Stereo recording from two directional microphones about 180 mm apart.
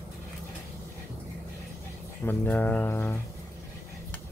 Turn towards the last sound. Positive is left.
turn(degrees=10)  # may be behind; listen again after turning